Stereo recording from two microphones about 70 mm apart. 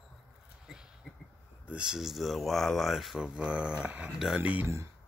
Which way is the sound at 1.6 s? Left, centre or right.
Centre.